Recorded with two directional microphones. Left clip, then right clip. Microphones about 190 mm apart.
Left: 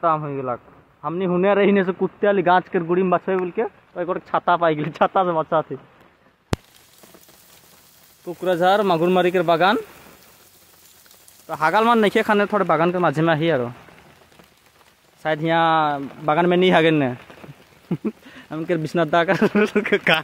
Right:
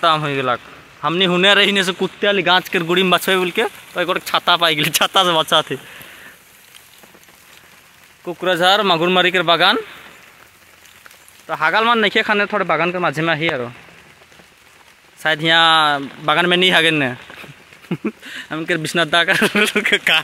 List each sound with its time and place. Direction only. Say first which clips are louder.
0.0 s speech: right 5 dB; 5° right (ahead or behind)
2.1 s speech: right 2 dB; 15° left (ahead or behind)
2.7 s speech: right 4 dB; 10° right (ahead or behind)
3.9 s speech: right 5 dB; 5° left (ahead or behind)
8.3 s speech: right 3 dB; 5° right (ahead or behind)
11.4 s speech: right 2 dB; 10° left (ahead or behind)
15.2 s speech: right 5 dB; 5° left (ahead or behind)